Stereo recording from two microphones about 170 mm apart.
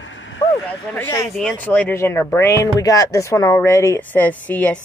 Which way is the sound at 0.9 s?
15° left (ahead or behind).